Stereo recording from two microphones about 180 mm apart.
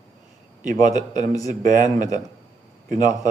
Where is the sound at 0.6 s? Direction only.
45° right (ahead or behind).